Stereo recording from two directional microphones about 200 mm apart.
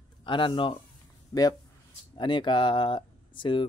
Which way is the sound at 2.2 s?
25° left (ahead or behind).